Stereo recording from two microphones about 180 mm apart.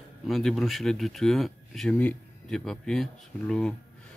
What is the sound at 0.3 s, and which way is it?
Speech, centre (ahead or behind).